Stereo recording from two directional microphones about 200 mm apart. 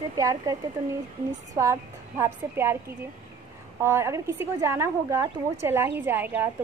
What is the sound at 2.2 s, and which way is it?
A woman's voice, 10° right (ahead or behind).